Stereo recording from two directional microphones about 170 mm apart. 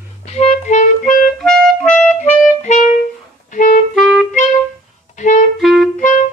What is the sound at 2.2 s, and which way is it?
Clarinet, 45° left (ahead or behind).